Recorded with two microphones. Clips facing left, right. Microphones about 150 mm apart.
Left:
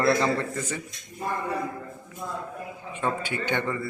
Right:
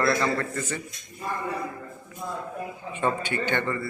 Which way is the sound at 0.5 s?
10° left (ahead or behind).